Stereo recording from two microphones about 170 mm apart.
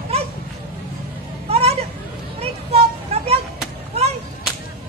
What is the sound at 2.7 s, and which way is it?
Vehicle, 35° right (ahead or behind).